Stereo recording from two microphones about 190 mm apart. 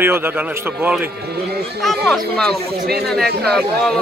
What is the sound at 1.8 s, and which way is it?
Speech, centre (ahead or behind).